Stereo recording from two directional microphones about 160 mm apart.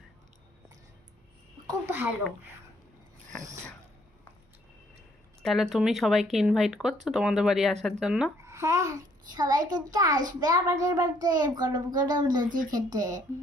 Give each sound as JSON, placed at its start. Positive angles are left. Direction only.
{"t": 1.9, "sound": "a sound", "side_deg": -15}
{"t": 5.4, "sound": "speech", "side_deg": 0}
{"t": 8.5, "sound": "a child's voice", "side_deg": -20}
{"t": 12.4, "sound": "speech", "side_deg": -55}
{"t": 12.7, "sound": "a child's voice", "side_deg": -20}